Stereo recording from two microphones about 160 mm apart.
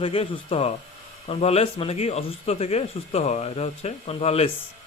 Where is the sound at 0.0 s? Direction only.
35° left (ahead or behind).